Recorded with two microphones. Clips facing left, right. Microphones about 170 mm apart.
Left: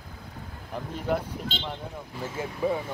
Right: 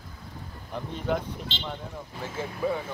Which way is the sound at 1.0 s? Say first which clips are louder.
Left 1 dB; 5° left (ahead or behind).